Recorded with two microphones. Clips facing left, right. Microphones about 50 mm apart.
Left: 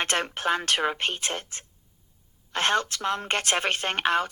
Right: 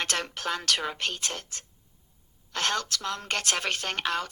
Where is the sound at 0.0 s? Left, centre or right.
Left.